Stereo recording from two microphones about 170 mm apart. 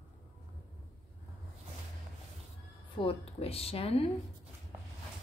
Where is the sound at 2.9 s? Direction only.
35° left (ahead or behind).